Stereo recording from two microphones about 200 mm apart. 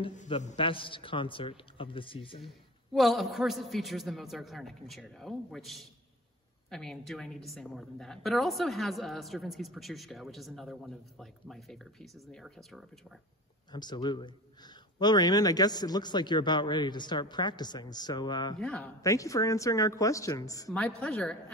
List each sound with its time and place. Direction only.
0.3 s a man's voice: 30° left (ahead or behind)
2.4 s a woman's voice: centre (ahead or behind)
13.7 s a man's voice: 20° left (ahead or behind)
18.6 s a woman's voice: 5° left (ahead or behind)
18.9 s speech: 15° left (ahead or behind)
20.7 s a woman's voice: 5° left (ahead or behind)